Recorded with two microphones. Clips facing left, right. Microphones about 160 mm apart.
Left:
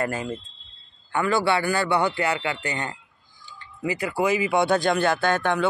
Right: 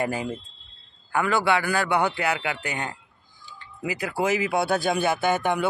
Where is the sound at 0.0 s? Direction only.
15° right (ahead or behind).